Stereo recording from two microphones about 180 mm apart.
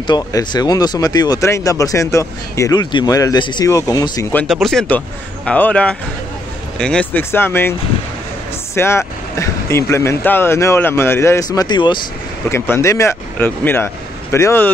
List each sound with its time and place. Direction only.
0.0 s speech: 25° left (ahead or behind)
4.3 s speech: 10° left (ahead or behind)
8.7 s speech: 15° left (ahead or behind)
12.4 s speech: 15° left (ahead or behind)